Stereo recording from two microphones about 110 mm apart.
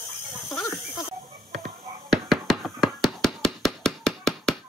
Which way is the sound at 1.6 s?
5° left (ahead or behind).